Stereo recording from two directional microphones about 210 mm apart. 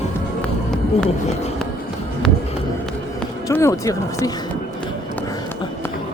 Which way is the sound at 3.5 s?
15° left (ahead or behind).